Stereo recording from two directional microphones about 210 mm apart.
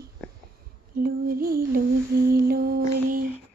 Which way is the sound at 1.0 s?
45° right (ahead or behind).